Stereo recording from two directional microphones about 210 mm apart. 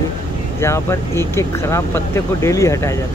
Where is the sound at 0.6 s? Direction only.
15° left (ahead or behind).